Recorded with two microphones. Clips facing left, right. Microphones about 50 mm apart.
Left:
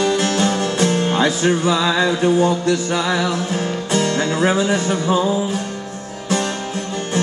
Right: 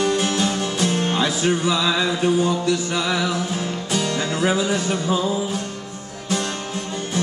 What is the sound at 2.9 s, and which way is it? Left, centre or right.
Music, left.